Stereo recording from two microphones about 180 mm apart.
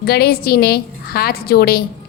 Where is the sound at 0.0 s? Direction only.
65° left (ahead or behind).